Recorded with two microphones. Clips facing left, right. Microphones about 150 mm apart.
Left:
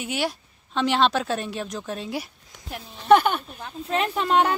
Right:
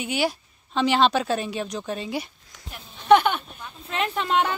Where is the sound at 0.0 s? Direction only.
Centre (ahead or behind).